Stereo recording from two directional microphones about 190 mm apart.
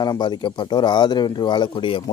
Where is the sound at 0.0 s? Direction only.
20° left (ahead or behind).